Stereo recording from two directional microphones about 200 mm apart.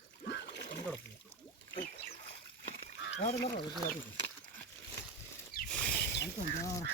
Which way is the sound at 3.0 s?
60° left (ahead or behind).